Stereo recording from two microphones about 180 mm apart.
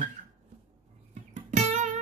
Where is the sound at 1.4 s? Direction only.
40° right (ahead or behind).